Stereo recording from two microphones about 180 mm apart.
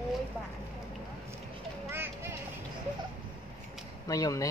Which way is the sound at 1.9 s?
10° right (ahead or behind).